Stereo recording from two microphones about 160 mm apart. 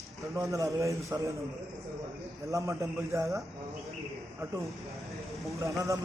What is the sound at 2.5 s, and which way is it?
Speech, 20° right (ahead or behind).